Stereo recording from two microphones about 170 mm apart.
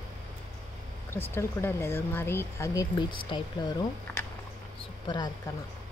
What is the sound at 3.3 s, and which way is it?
Speech, 30° left (ahead or behind).